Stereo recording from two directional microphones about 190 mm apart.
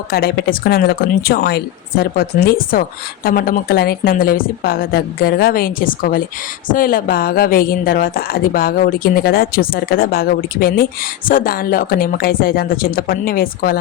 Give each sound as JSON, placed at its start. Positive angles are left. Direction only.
{"t": 0.1, "sound": "speech", "side_deg": 55}